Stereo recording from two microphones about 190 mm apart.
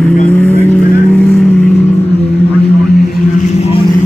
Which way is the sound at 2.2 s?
60° left (ahead or behind).